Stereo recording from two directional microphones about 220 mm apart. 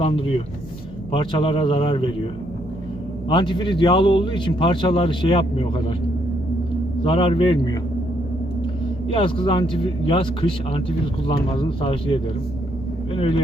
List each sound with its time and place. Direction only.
0.0 s speech: 25° left (ahead or behind)
3.2 s speech: 20° left (ahead or behind)
7.0 s speech: 25° left (ahead or behind)
9.0 s speech: 25° left (ahead or behind)